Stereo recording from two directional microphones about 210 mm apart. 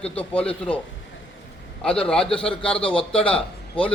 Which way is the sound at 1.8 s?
5° left (ahead or behind).